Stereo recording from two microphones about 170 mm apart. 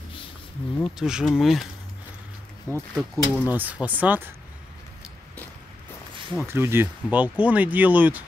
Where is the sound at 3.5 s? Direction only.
10° right (ahead or behind).